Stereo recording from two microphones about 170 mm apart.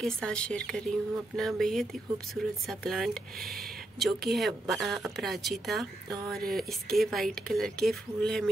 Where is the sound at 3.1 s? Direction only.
60° right (ahead or behind).